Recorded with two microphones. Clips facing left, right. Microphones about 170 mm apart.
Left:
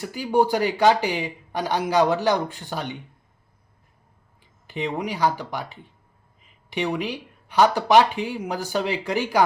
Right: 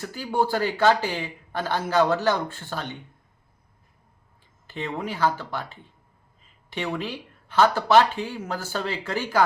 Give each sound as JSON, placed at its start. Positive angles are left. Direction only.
{"t": 0.0, "sound": "speech", "side_deg": 15}
{"t": 4.6, "sound": "speech", "side_deg": 15}